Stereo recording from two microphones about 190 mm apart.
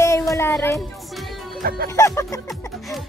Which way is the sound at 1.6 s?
50° right (ahead or behind).